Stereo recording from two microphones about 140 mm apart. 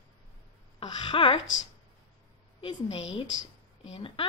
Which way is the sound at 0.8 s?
35° left (ahead or behind).